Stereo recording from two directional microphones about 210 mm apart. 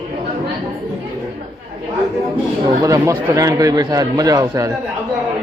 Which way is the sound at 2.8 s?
15° right (ahead or behind).